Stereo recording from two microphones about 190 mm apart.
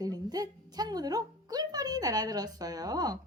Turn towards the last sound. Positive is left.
turn(degrees=-20)  # may be behind; listen again after turning